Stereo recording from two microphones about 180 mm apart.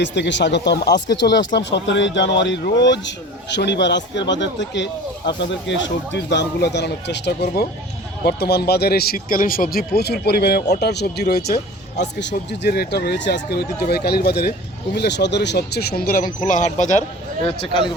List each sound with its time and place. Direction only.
0.0 s speech: 80° left; by 14.5 s 60° left (ahead or behind)
14.9 s speech: 75° left (ahead or behind); by 17.0 s 45° left (ahead or behind)